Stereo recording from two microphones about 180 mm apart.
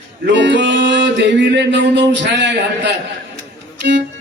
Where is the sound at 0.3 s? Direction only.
85° right.